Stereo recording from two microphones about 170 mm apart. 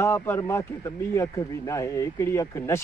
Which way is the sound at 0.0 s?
15° left (ahead or behind).